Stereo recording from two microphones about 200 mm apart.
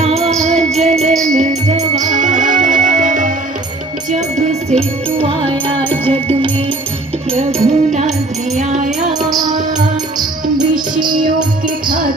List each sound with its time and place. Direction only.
0.0 s music: 30° right (ahead or behind)
5.9 s music: 10° left (ahead or behind)
7.3 s music: 30° right (ahead or behind)
9.3 s music: 20° right (ahead or behind)
11.1 s music: 40° right (ahead or behind)